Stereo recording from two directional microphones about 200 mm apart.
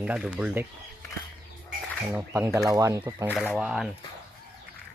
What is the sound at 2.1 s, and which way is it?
Speech, 15° right (ahead or behind).